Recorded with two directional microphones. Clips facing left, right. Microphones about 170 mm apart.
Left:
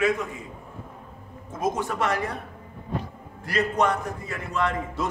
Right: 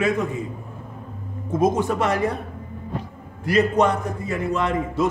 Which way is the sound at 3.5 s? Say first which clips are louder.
Right 5 dB; 25° right (ahead or behind).